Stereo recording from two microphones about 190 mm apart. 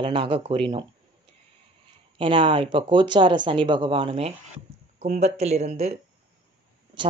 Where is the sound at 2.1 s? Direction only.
25° right (ahead or behind).